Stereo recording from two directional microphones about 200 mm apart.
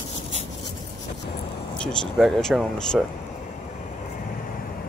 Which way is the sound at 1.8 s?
Centre (ahead or behind).